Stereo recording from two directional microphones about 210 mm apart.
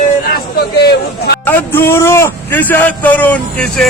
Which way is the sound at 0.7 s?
50° left (ahead or behind).